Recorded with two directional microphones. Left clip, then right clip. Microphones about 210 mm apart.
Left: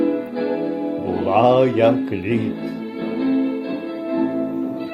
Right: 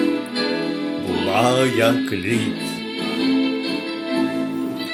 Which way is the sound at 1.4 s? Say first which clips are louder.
Left 3 dB; 15° right (ahead or behind).